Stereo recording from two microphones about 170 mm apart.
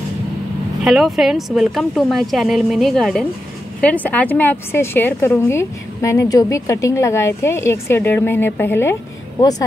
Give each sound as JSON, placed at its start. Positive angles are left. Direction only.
{"t": 0.8, "sound": "a woman's voice", "side_deg": 0}